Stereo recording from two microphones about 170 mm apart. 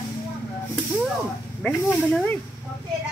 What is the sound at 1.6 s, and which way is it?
Speech, 5° left (ahead or behind).